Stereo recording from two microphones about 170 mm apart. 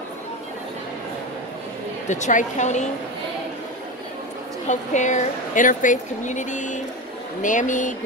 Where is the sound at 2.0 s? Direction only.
45° left (ahead or behind).